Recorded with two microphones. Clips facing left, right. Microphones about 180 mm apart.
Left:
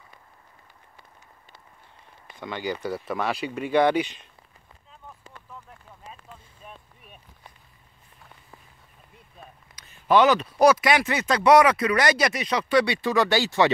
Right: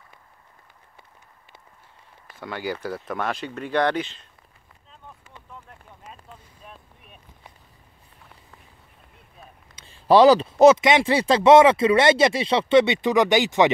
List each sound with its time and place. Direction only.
2.3 s speech: 5° right (ahead or behind); by 4.3 s 15° left (ahead or behind)
6.6 s boat: centre (ahead or behind)
9.8 s speech: 30° right (ahead or behind)